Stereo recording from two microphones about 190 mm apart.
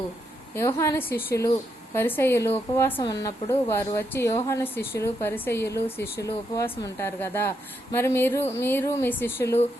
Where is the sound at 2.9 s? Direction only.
25° left (ahead or behind).